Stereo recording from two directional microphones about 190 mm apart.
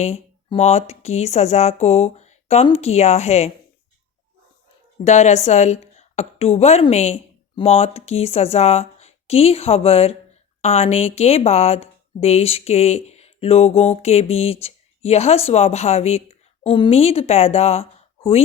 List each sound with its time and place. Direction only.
0.0 s speech: 35° left (ahead or behind)
5.0 s a woman's voice: 35° left (ahead or behind)